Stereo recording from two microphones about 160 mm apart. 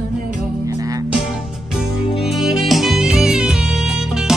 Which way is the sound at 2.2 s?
Centre (ahead or behind).